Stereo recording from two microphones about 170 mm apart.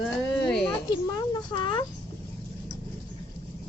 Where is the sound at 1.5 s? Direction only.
25° left (ahead or behind).